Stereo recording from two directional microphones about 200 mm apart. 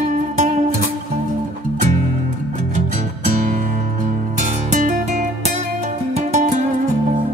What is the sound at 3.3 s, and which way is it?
Music, 45° right (ahead or behind).